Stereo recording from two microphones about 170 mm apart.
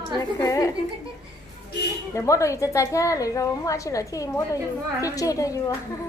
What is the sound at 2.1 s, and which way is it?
A woman's voice, 20° left (ahead or behind).